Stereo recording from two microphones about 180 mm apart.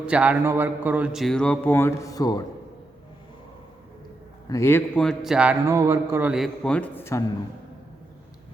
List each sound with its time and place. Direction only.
0.0 s a man's voice: 5° right (ahead or behind); by 2.4 s 20° left (ahead or behind)
4.4 s a man's voice: 15° left (ahead or behind)
4.9 s a man's voice: centre (ahead or behind)
5.6 s a man's voice: 15° right (ahead or behind)
6.3 s speech: centre (ahead or behind)